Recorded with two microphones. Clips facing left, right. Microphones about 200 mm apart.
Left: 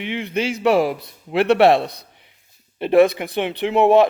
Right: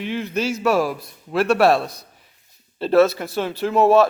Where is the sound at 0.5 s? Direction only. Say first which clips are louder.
Left 3 dB; 15° left (ahead or behind).